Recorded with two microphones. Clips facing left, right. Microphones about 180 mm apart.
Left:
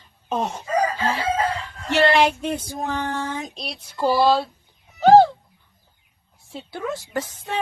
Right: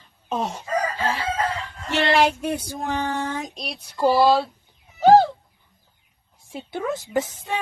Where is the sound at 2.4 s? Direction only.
10° right (ahead or behind).